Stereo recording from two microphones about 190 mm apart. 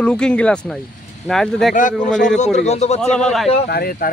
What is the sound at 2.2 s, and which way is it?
Speech, 40° left (ahead or behind).